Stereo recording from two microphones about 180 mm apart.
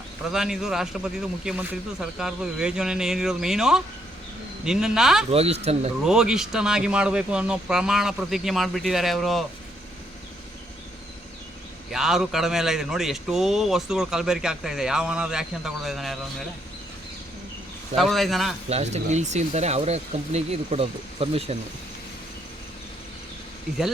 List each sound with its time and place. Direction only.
0.3 s a man's voice: 5° right (ahead or behind)
5.3 s speech: 35° right (ahead or behind)
6.1 s a man's voice: 5° right (ahead or behind)
11.9 s a man's voice: centre (ahead or behind)
17.9 s a man's voice: centre (ahead or behind)
18.7 s speech: 40° right (ahead or behind)